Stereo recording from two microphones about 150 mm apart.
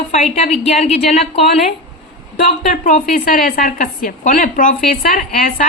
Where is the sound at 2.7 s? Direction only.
65° left (ahead or behind).